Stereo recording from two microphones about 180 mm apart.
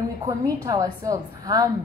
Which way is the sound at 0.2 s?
20° right (ahead or behind).